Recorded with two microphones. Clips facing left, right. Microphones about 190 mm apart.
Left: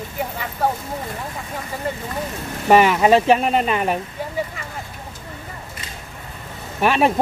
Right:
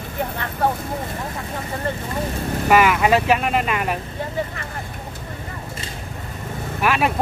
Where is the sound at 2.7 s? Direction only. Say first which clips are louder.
Left 3 dB; 30° left (ahead or behind).